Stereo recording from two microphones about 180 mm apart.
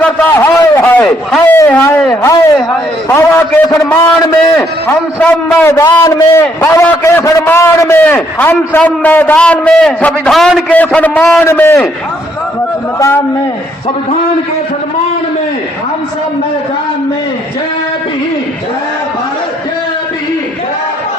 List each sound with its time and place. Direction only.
0.0 s a sound: 10° left (ahead or behind)
1.5 s a man's voice: 15° left (ahead or behind)
13.0 s a man's voice: 15° left (ahead or behind)